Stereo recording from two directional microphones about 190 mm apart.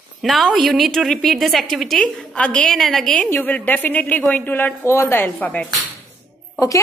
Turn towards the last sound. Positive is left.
turn(degrees=15)  # may be behind; listen again after turning